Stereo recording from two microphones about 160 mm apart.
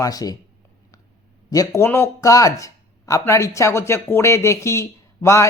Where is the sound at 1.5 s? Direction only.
20° left (ahead or behind).